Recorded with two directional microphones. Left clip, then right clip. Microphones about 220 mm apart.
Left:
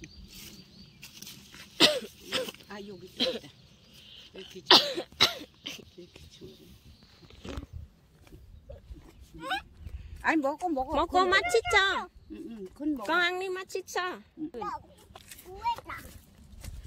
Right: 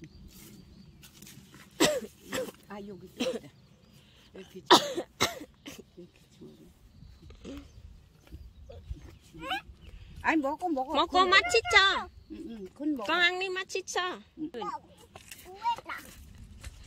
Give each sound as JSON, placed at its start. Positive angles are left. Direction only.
{"t": 1.9, "sound": "throat clearing", "side_deg": -20}
{"t": 3.2, "sound": "speech", "side_deg": -25}
{"t": 4.4, "sound": "cough", "side_deg": -25}
{"t": 9.4, "sound": "fowl", "side_deg": -10}
{"t": 10.2, "sound": "speech", "side_deg": -5}
{"t": 12.0, "sound": "speech", "side_deg": -10}
{"t": 13.0, "sound": "speech", "side_deg": 10}